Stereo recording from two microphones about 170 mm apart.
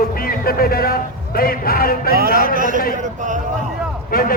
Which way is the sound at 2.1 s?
60° right (ahead or behind).